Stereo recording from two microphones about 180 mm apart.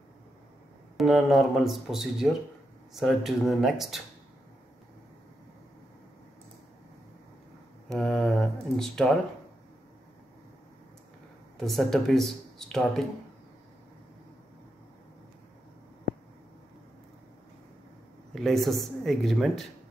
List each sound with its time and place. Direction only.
0.9 s speech: centre (ahead or behind)
7.9 s speech: 5° left (ahead or behind)
11.5 s speech: centre (ahead or behind)
18.3 s speech: centre (ahead or behind)